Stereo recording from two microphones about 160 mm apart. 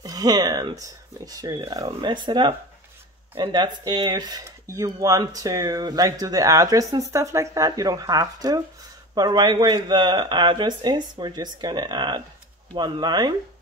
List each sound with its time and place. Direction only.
0.0 s speech: 25° right (ahead or behind)